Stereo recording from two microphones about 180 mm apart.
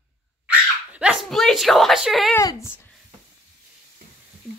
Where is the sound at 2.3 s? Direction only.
15° left (ahead or behind).